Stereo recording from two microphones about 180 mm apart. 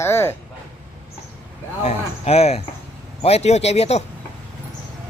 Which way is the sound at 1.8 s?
35° left (ahead or behind).